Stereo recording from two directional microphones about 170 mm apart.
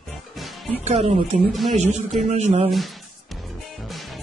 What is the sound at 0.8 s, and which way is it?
Speech, 40° right (ahead or behind).